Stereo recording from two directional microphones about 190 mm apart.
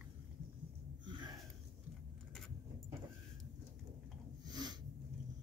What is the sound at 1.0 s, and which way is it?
Sniff, 25° right (ahead or behind).